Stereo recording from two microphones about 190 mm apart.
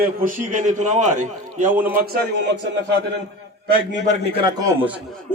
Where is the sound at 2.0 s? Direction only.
55° right (ahead or behind).